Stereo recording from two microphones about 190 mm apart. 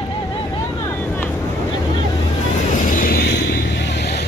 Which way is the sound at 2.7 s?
45° left (ahead or behind).